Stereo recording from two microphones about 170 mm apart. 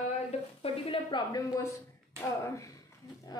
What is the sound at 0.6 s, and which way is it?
Speech, 35° left (ahead or behind).